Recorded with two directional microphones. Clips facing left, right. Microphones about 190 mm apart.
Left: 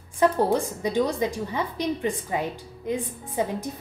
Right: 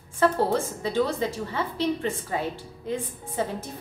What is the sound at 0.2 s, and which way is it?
A woman's voice, 15° left (ahead or behind).